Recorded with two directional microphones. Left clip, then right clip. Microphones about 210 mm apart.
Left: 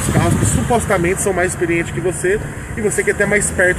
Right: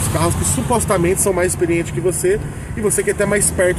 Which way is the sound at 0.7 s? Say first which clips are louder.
Even; 20° right (ahead or behind).